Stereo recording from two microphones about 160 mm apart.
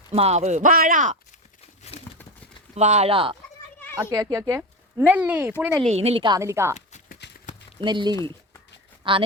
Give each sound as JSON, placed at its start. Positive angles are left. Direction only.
{"t": 0.1, "sound": "speech", "side_deg": -40}
{"t": 2.7, "sound": "speech", "side_deg": -45}
{"t": 4.0, "sound": "speech", "side_deg": -20}
{"t": 5.8, "sound": "a woman's voice", "side_deg": -40}
{"t": 7.2, "sound": "clip-clop", "side_deg": 90}
{"t": 7.8, "sound": "a woman's voice", "side_deg": -30}